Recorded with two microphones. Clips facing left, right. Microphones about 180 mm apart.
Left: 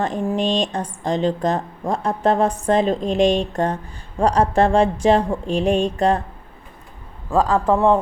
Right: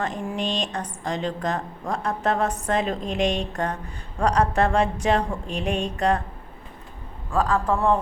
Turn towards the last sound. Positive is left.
turn(degrees=30)  # may be behind; listen again after turning